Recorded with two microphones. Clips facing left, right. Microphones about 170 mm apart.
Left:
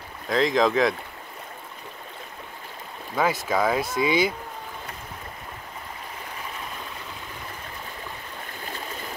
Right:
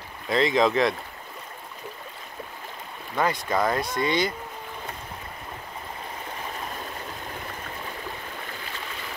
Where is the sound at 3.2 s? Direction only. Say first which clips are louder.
Left 1 dB; 5° left (ahead or behind).